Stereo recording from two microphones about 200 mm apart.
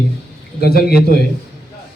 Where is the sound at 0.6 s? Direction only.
50° left (ahead or behind).